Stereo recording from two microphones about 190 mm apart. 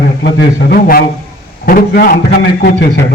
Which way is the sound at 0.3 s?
55° left (ahead or behind).